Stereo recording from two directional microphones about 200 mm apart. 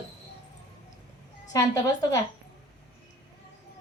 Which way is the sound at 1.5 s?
20° left (ahead or behind).